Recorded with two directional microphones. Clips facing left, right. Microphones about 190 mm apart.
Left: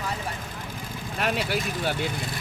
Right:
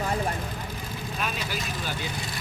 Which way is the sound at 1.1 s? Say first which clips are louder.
Left 7 dB; 65° left (ahead or behind).